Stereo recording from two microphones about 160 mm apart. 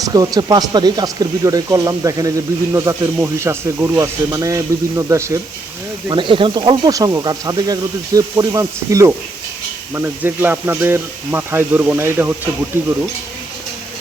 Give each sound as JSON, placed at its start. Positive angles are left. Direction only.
{"t": 0.0, "sound": "speech", "side_deg": -20}
{"t": 6.1, "sound": "speech", "side_deg": -30}